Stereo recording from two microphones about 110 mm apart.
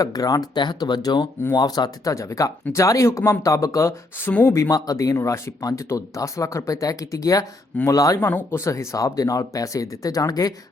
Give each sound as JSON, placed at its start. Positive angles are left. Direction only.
{"t": 0.0, "sound": "speech", "side_deg": 35}
{"t": 4.3, "sound": "speech", "side_deg": 15}
{"t": 4.5, "sound": "speech", "side_deg": 30}